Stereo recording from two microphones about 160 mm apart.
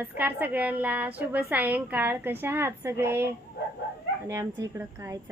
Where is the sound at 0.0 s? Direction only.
10° right (ahead or behind).